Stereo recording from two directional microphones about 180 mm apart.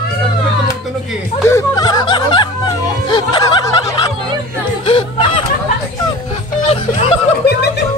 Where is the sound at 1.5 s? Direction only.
20° left (ahead or behind).